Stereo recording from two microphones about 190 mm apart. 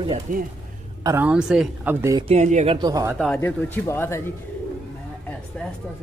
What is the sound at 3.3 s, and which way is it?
Speech, 10° left (ahead or behind).